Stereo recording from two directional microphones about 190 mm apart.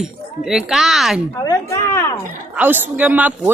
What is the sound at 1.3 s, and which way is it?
Speech, 20° left (ahead or behind).